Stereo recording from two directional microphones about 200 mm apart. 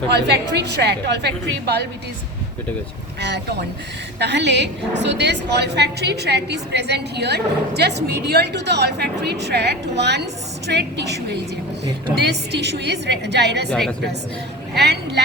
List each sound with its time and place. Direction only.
0.1 s a woman's voice: 60° right (ahead or behind)
3.2 s a woman's voice: 60° right (ahead or behind)
14.8 s a woman's voice: 55° right (ahead or behind)